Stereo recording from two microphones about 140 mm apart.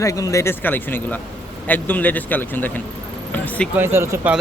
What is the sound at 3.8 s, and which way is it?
Speech, 15° right (ahead or behind).